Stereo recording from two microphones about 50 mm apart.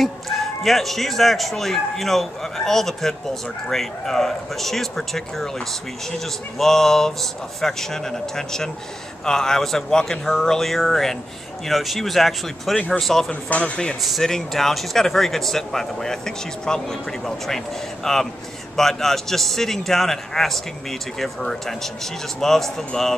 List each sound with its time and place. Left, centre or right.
0.0 s speech: centre
13.3 s speech: left
14.0 s speech: centre